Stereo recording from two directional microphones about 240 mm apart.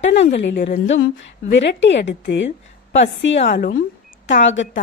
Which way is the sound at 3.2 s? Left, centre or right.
Left.